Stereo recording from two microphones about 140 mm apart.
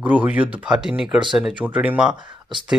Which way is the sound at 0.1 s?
10° right (ahead or behind).